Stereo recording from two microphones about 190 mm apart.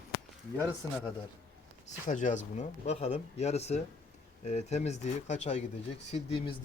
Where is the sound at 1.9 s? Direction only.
40° left (ahead or behind).